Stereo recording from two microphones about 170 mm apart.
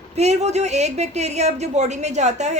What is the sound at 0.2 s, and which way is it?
A woman's voice, 40° right (ahead or behind).